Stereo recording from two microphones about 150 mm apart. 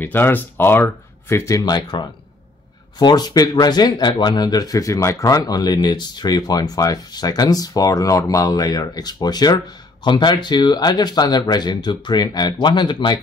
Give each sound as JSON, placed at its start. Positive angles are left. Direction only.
{"t": 0.0, "sound": "speech", "side_deg": 15}